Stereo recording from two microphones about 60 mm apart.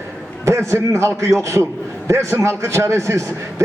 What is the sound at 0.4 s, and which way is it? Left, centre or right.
A man's voice, right.